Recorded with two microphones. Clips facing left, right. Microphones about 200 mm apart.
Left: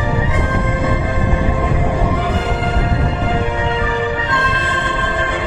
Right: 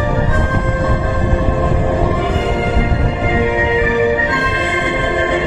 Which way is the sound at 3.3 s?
10° right (ahead or behind).